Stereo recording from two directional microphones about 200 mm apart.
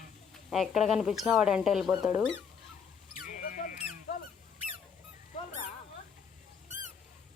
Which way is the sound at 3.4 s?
40° left (ahead or behind).